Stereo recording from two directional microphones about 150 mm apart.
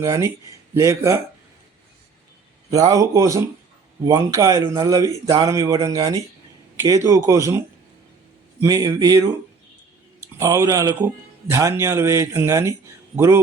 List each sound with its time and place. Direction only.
0.0 s a man's voice: 20° right (ahead or behind)
2.6 s a man's voice: 25° right (ahead or behind)
8.6 s a man's voice: 25° right (ahead or behind)
10.3 s a man's voice: 20° right (ahead or behind)